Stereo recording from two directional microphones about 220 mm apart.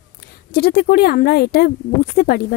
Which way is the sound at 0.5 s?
45° left (ahead or behind).